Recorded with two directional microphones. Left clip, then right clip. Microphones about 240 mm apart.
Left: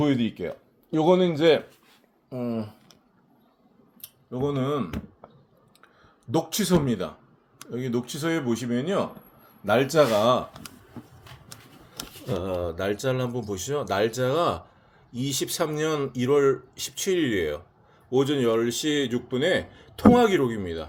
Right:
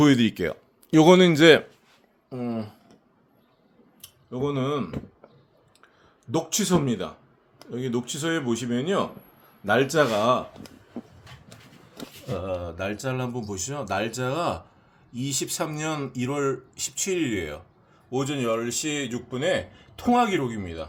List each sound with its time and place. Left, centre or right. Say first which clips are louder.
0.0 s speech: right 5 dB; right
2.3 s speech: left 1 dB; centre
4.0 s speech: even; centre
6.3 s speech: even; centre
11.9 s speech: left 2 dB; left